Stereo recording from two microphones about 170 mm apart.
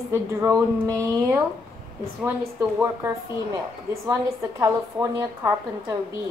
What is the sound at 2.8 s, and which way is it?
A woman's voice, 15° right (ahead or behind).